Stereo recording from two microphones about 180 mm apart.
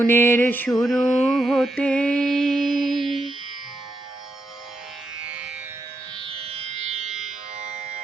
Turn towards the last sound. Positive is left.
turn(degrees=-40)  # may be behind; listen again after turning